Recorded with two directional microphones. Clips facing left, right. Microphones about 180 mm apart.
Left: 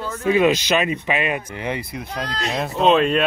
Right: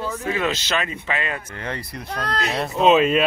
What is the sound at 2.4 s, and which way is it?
Speech, centre (ahead or behind).